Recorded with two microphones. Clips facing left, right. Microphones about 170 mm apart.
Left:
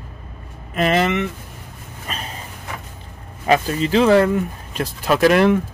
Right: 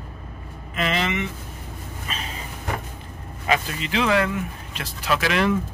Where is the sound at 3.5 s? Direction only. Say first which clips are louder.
Left 7 dB; 40° left (ahead or behind); by 5.6 s 55° left (ahead or behind).